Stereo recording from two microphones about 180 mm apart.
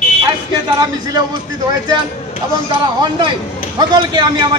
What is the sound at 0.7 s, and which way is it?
Speech, 25° right (ahead or behind).